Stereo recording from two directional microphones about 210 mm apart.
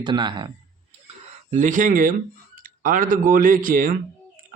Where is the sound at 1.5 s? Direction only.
35° right (ahead or behind).